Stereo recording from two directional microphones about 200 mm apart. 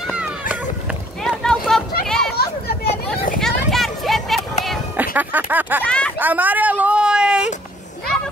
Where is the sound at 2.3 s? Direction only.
50° left (ahead or behind).